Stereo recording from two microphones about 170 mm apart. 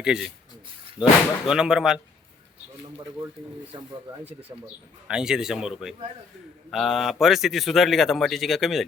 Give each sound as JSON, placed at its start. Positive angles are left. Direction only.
{"t": 0.0, "sound": "speech", "side_deg": -5}
{"t": 3.7, "sound": "speech", "side_deg": -25}
{"t": 5.0, "sound": "speech", "side_deg": -5}